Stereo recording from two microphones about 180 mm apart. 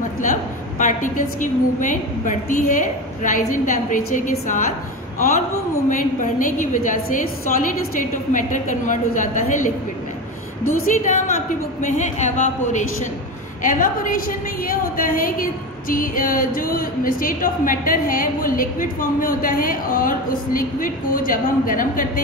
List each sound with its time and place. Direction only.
0.2 s a woman's voice: 45° left (ahead or behind)
5.9 s a woman's voice: 45° left (ahead or behind)
10.9 s a woman's voice: 45° left (ahead or behind)